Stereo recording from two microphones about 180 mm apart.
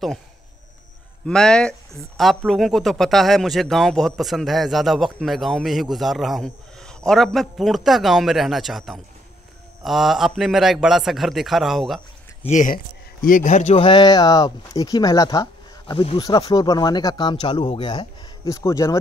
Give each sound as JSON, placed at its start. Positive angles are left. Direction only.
{"t": 1.2, "sound": "speech", "side_deg": 5}
{"t": 12.4, "sound": "speech", "side_deg": 45}
{"t": 13.7, "sound": "speech", "side_deg": 25}